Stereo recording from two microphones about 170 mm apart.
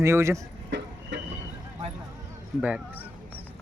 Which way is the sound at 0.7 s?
90° right.